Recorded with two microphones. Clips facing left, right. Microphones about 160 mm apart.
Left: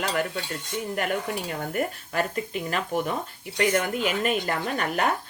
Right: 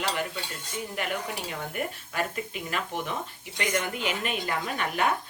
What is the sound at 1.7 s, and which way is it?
Speech, 40° left (ahead or behind).